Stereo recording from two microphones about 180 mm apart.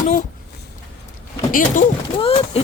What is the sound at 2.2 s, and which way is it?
Speech, 30° left (ahead or behind).